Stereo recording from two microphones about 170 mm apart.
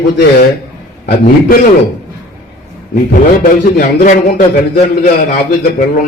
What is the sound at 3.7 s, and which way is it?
A man's voice, 50° left (ahead or behind).